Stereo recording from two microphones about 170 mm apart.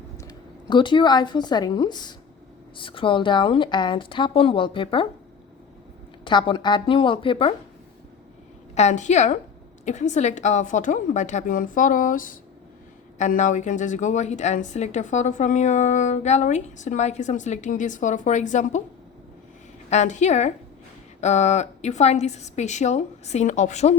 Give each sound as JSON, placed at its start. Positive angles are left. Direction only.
{"t": 0.2, "sound": "speech", "side_deg": 25}
{"t": 6.2, "sound": "speech", "side_deg": 30}
{"t": 8.7, "sound": "a woman's voice", "side_deg": 40}
{"t": 19.9, "sound": "a woman's voice", "side_deg": 45}